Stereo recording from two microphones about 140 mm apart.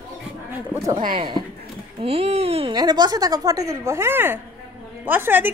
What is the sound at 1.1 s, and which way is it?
Speech, 35° right (ahead or behind).